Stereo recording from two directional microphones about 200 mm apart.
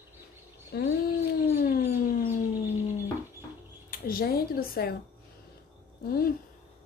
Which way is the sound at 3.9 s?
45° left (ahead or behind).